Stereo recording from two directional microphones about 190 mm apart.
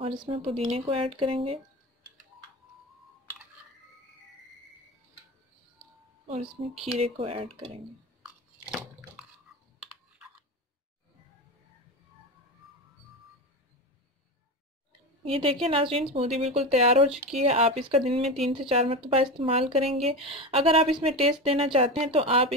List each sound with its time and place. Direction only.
0.0 s speech: 25° right (ahead or behind)
6.2 s speech: 30° right (ahead or behind)
15.2 s speech: 30° right (ahead or behind)